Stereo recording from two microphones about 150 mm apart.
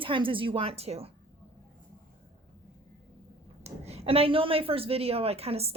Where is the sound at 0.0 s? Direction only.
35° right (ahead or behind).